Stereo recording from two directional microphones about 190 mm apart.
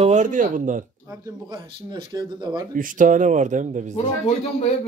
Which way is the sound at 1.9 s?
25° right (ahead or behind).